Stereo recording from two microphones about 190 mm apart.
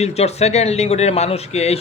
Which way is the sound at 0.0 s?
35° left (ahead or behind).